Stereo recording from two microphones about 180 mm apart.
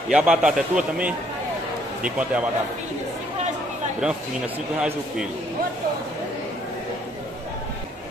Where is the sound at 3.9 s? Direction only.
5° right (ahead or behind).